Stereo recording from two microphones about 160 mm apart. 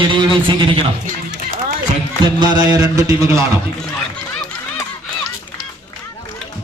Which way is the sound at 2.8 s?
20° right (ahead or behind).